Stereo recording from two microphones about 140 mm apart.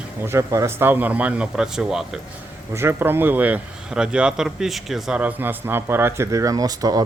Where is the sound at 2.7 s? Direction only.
15° right (ahead or behind).